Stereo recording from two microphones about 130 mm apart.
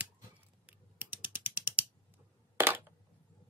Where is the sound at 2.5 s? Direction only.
15° right (ahead or behind).